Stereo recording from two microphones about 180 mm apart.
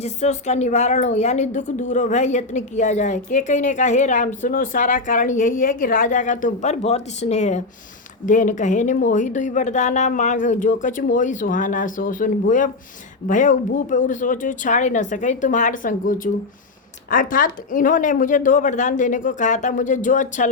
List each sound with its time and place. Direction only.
0.0 s a woman's voice: 40° left (ahead or behind)